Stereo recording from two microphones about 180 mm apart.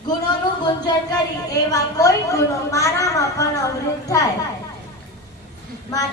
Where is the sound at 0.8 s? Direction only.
25° left (ahead or behind).